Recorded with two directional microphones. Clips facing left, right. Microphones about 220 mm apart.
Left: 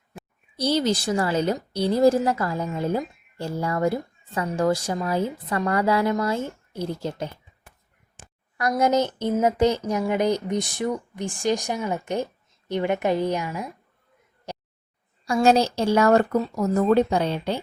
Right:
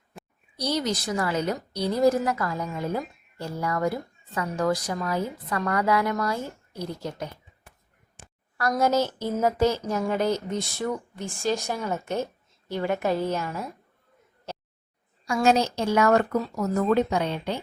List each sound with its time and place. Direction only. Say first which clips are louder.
0.1 s a sound: left 3 dB; centre (ahead or behind)
0.5 s a woman's voice: left 5 dB; 30° left (ahead or behind)
8.5 s speech: left 2 dB; 20° left (ahead or behind)
15.2 s speech: left 3 dB; 30° left (ahead or behind)